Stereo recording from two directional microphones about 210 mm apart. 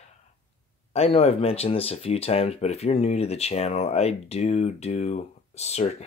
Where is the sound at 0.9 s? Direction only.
30° left (ahead or behind).